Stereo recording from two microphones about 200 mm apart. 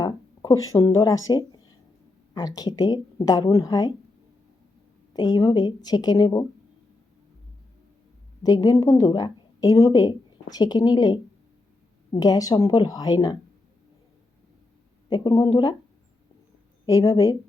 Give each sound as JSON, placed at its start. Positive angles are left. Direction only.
{"t": 0.0, "sound": "a sound", "side_deg": 20}
{"t": 0.7, "sound": "speech", "side_deg": 15}
{"t": 1.3, "sound": "a sound", "side_deg": 20}
{"t": 2.3, "sound": "a woman's voice", "side_deg": 20}
{"t": 5.1, "sound": "a woman's voice", "side_deg": 20}
{"t": 8.4, "sound": "a woman's voice", "side_deg": 20}
{"t": 15.1, "sound": "a woman's voice", "side_deg": 20}
{"t": 16.8, "sound": "speech", "side_deg": 15}